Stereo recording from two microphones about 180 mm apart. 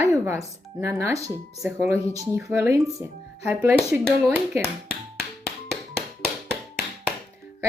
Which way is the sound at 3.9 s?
5° right (ahead or behind).